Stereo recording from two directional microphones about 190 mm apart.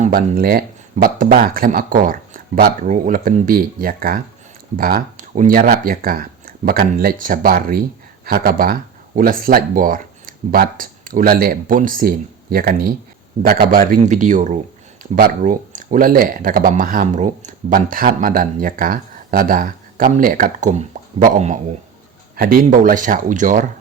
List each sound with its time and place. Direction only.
0.0 s a man's voice: 50° right (ahead or behind)